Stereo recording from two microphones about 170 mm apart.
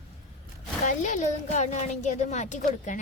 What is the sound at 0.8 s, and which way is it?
A woman's voice, 45° left (ahead or behind).